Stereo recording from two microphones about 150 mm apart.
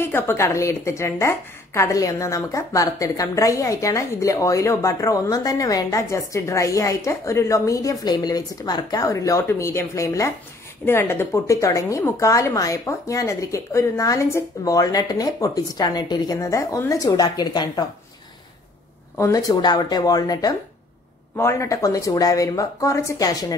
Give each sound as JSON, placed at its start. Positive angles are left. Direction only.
{"t": 0.0, "sound": "a woman's voice", "side_deg": 15}
{"t": 19.1, "sound": "a woman's voice", "side_deg": 20}